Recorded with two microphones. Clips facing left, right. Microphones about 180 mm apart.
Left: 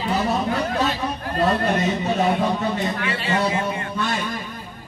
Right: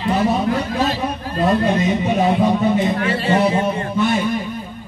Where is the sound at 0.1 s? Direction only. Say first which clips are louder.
Right 5 dB; 15° right (ahead or behind).